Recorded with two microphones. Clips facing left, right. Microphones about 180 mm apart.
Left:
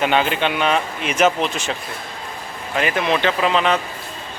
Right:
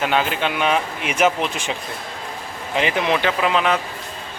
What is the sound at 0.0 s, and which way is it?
Speech, centre (ahead or behind).